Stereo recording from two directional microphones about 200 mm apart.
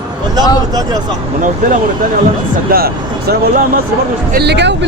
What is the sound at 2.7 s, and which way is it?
Speech, 50° right (ahead or behind).